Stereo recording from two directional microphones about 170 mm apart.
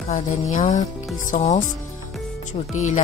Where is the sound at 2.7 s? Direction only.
45° left (ahead or behind).